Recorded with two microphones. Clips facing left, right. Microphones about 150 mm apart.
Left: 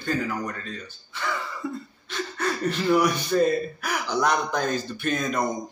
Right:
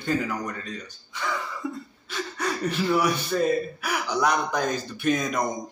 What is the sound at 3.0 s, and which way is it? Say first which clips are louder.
A man's voice: left 2 dB; 5° right (ahead or behind).